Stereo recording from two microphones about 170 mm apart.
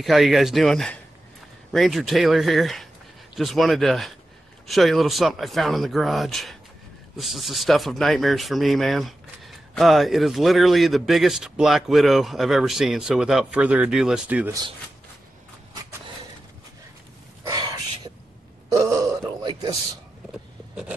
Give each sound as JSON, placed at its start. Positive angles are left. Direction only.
{"t": 0.0, "sound": "speech", "side_deg": 0}
{"t": 17.5, "sound": "a sound", "side_deg": -20}
{"t": 18.8, "sound": "groan", "side_deg": -20}